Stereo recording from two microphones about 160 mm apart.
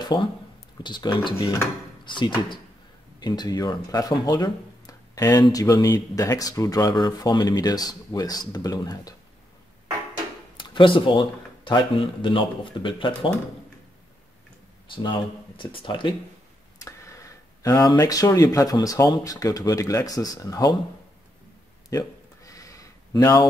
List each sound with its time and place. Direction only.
0.0 s speech: 30° left (ahead or behind)
10.6 s speech: 30° left (ahead or behind)
15.0 s speech: 30° left (ahead or behind)
16.7 s speech: 20° left (ahead or behind)
21.8 s a sound: 20° left (ahead or behind)